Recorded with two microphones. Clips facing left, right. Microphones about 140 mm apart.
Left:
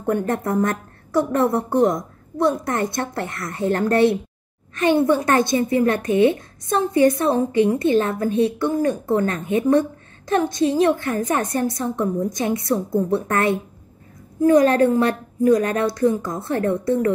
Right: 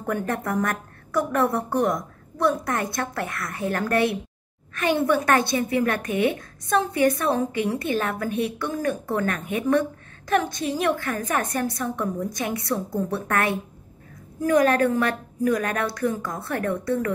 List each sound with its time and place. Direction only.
0.0 s a woman's voice: 25° left (ahead or behind)
7.1 s a woman's voice: 20° left (ahead or behind)